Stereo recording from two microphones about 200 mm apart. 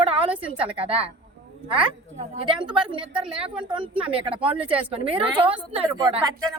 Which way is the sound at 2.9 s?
25° right (ahead or behind).